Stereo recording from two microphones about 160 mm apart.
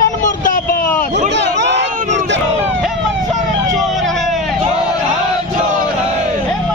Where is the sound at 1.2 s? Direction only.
90° right.